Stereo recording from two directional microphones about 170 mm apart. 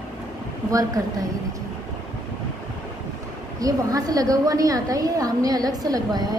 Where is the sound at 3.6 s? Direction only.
20° right (ahead or behind).